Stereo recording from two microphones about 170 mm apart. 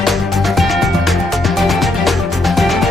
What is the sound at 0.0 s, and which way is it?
Music, centre (ahead or behind).